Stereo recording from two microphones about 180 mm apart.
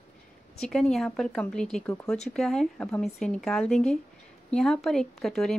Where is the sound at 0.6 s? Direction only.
5° left (ahead or behind).